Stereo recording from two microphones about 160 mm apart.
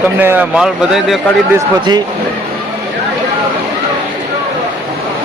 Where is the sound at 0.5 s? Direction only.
5° right (ahead or behind).